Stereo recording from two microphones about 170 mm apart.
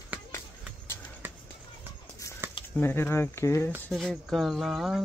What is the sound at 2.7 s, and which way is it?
Speech, 10° left (ahead or behind).